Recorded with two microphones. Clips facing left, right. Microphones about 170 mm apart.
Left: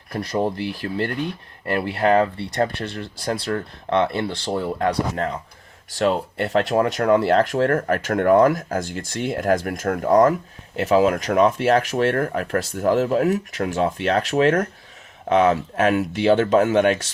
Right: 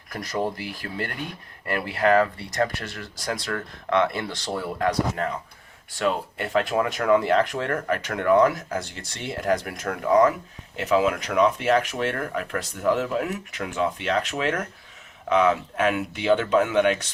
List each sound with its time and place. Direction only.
0.1 s speech: 30° left (ahead or behind); by 17.0 s 45° left (ahead or behind)